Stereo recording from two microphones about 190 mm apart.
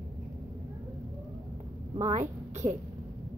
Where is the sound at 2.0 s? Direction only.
40° right (ahead or behind).